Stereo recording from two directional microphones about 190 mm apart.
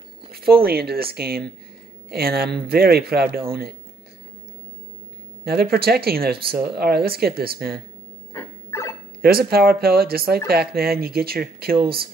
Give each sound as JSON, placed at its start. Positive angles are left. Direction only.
{"t": 0.3, "sound": "speech", "side_deg": -55}
{"t": 5.5, "sound": "speech", "side_deg": -55}
{"t": 8.3, "sound": "a sound", "side_deg": 15}
{"t": 9.2, "sound": "speech", "side_deg": -55}